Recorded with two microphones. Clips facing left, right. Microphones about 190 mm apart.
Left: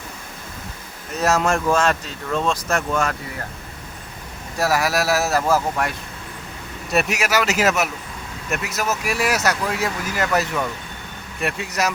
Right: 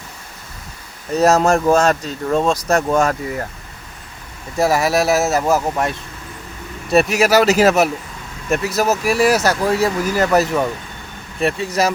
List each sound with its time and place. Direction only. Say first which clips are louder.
1.2 s speech: right 6 dB; 40° right (ahead or behind)
4.5 s speech: right 5 dB; 25° right (ahead or behind)
6.9 s speech: right 7 dB; 35° right (ahead or behind)